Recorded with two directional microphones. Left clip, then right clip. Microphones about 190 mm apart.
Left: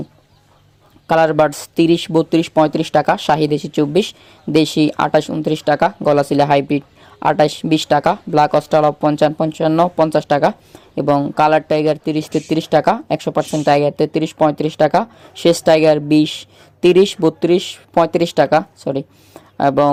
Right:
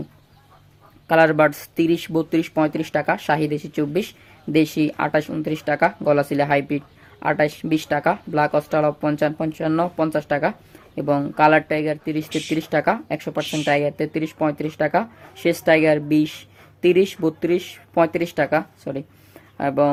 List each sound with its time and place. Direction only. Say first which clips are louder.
1.0 s speech: left 3 dB; 30° left (ahead or behind)